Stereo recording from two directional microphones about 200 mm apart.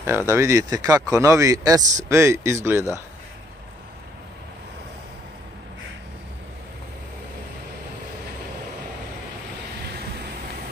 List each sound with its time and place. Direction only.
0.0 s speech: 10° right (ahead or behind)